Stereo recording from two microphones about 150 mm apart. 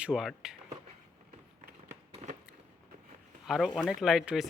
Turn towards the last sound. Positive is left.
turn(degrees=0)  # may be behind; listen again after turning